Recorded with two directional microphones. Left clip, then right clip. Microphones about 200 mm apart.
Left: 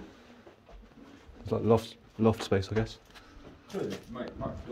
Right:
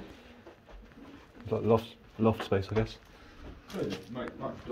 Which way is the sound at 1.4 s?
35° left (ahead or behind).